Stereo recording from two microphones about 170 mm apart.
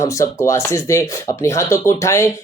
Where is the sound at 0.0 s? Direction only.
20° left (ahead or behind).